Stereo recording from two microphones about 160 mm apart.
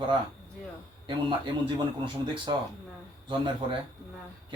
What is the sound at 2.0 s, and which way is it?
Speech, 30° right (ahead or behind).